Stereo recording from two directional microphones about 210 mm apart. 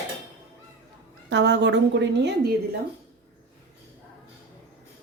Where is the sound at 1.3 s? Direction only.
55° right (ahead or behind).